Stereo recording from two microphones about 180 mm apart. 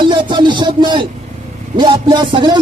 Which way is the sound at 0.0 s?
25° right (ahead or behind).